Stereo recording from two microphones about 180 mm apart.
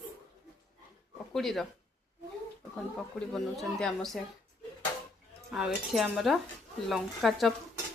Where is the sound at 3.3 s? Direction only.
5° left (ahead or behind).